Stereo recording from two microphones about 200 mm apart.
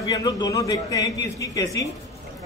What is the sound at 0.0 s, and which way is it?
A man's voice, 20° left (ahead or behind).